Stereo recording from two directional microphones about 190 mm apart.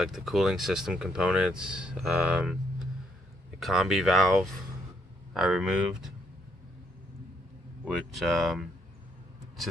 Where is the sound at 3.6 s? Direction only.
Centre (ahead or behind).